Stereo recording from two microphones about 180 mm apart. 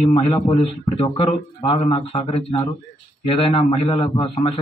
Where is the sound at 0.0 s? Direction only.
30° left (ahead or behind).